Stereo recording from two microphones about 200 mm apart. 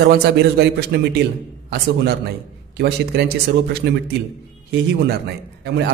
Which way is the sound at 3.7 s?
55° right (ahead or behind).